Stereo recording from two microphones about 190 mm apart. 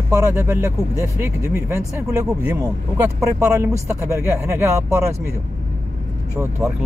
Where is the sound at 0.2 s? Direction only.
15° right (ahead or behind).